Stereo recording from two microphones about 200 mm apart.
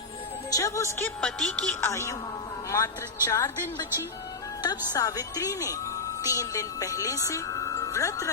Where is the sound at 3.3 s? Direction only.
15° left (ahead or behind).